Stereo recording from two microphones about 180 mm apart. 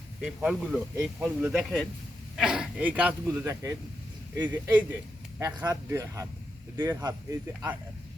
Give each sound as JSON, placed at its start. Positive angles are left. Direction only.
{"t": 0.3, "sound": "speech", "side_deg": 0}